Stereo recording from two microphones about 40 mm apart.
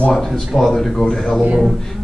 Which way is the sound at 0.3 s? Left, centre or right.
Centre.